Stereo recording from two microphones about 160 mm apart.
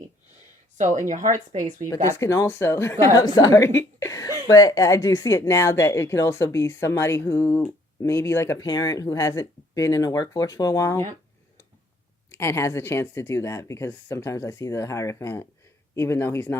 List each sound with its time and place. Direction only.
0.8 s a woman's voice: 50° right (ahead or behind)
1.9 s speech: 20° left (ahead or behind)
12.3 s speech: 15° left (ahead or behind)